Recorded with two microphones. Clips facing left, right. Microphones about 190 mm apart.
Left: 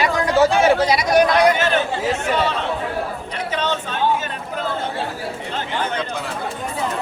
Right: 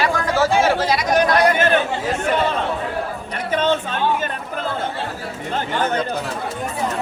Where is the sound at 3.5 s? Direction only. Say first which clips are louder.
Right 5 dB; 50° right (ahead or behind).